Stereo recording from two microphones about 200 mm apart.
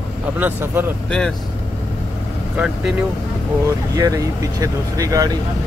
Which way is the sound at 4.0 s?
15° right (ahead or behind).